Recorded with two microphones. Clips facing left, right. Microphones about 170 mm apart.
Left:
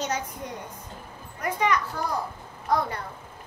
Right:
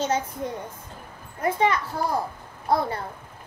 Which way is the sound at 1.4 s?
30° right (ahead or behind).